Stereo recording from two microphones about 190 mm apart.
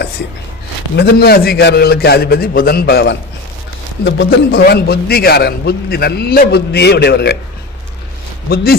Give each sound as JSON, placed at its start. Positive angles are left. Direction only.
{"t": 0.9, "sound": "a man's voice", "side_deg": 55}
{"t": 4.0, "sound": "a man's voice", "side_deg": 70}
{"t": 8.4, "sound": "a man's voice", "side_deg": 55}